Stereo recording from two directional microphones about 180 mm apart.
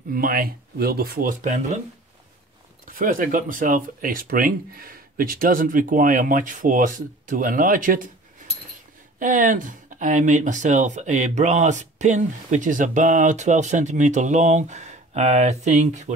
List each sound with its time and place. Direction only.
0.1 s speech: 50° right (ahead or behind)
2.8 s speech: 50° right (ahead or behind)
9.2 s speech: 45° right (ahead or behind)